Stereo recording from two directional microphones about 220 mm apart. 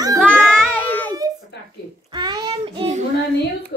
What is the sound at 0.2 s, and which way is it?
Music, 5° left (ahead or behind).